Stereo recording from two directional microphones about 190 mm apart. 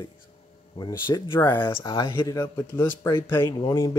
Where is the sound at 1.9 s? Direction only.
25° left (ahead or behind).